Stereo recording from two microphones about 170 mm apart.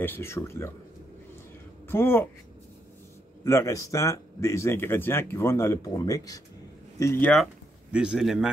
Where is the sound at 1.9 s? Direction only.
15° left (ahead or behind).